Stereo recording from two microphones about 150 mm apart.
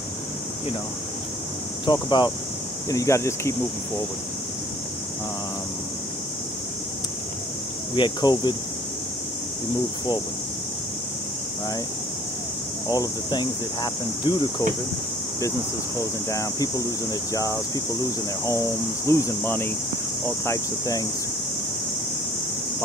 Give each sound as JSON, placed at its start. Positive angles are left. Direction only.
{"t": 1.9, "sound": "speech", "side_deg": 30}
{"t": 7.9, "sound": "speech", "side_deg": 30}
{"t": 12.8, "sound": "speech", "side_deg": 25}
{"t": 16.0, "sound": "speech", "side_deg": 20}
{"t": 19.0, "sound": "speech", "side_deg": 20}